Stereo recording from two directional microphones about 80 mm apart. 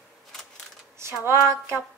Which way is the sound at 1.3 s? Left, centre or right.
Right.